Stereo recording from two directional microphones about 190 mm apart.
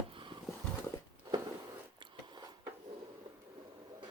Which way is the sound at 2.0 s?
25° right (ahead or behind).